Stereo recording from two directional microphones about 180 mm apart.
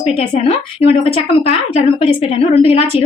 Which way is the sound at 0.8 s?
30° left (ahead or behind).